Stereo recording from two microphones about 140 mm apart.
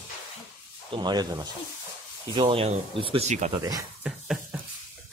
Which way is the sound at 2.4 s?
40° right (ahead or behind).